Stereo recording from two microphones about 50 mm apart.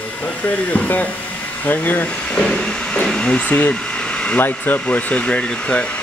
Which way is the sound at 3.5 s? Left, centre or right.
Left.